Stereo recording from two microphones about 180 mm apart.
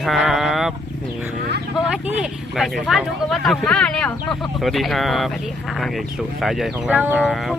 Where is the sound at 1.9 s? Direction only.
5° right (ahead or behind).